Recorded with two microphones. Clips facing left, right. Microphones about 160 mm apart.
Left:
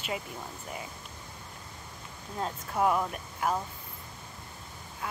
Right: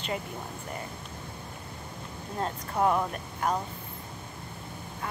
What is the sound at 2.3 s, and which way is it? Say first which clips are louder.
Speech: right 1 dB; centre (ahead or behind).